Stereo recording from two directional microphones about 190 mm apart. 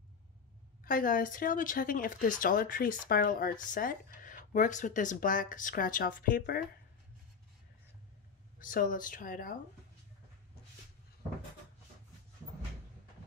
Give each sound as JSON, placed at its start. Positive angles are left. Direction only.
{"t": 0.8, "sound": "speech", "side_deg": 45}
{"t": 8.5, "sound": "speech", "side_deg": 45}